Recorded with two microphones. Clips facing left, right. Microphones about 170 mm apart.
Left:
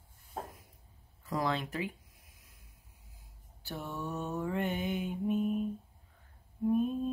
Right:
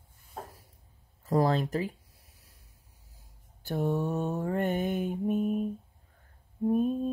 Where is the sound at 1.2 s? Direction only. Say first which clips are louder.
Right 7 dB; 40° right (ahead or behind).